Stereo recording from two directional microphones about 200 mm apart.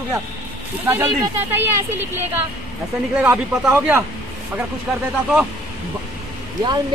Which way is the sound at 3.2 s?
10° right (ahead or behind).